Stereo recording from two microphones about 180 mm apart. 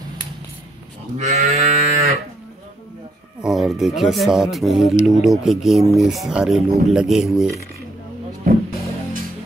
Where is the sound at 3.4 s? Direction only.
Centre (ahead or behind).